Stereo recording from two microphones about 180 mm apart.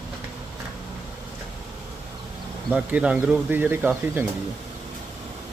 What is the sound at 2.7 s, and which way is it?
Speech, 10° right (ahead or behind).